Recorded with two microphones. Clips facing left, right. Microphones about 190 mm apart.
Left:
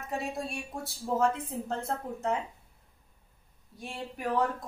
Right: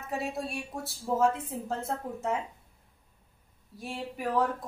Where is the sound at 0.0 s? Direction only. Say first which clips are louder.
Right 1 dB; 5° right (ahead or behind).